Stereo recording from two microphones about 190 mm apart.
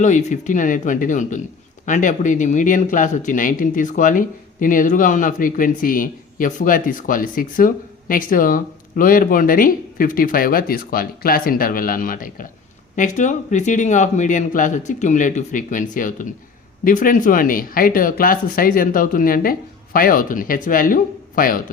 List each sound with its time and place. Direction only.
0.0 s speech: 40° left (ahead or behind)